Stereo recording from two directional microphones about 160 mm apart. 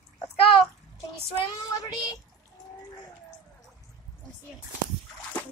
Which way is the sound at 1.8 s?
20° left (ahead or behind).